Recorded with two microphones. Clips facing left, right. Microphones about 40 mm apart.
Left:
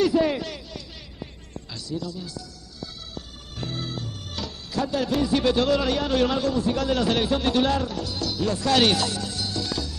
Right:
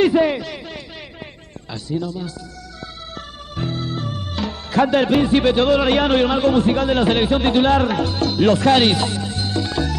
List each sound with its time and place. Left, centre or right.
0.0 s a sound: right
1.7 s a man's voice: right
3.6 s organ: right
3.9 s music: right
4.6 s a man's voice: right
5.9 s a man's voice: right
6.2 s a man's voice: right
7.8 s a man's voice: right
8.7 s music: right